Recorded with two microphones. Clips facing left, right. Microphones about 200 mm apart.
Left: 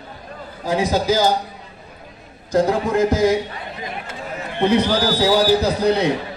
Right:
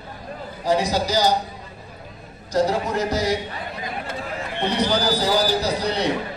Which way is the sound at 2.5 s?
50° left (ahead or behind).